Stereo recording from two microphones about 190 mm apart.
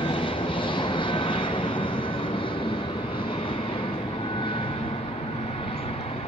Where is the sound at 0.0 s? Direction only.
25° left (ahead or behind).